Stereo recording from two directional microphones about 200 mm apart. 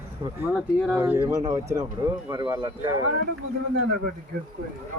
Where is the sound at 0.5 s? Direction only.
5° right (ahead or behind).